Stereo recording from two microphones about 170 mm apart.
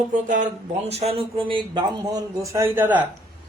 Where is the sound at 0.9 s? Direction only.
35° right (ahead or behind).